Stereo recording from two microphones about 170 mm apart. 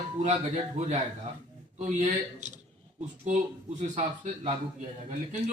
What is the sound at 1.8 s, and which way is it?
Speech, 45° right (ahead or behind).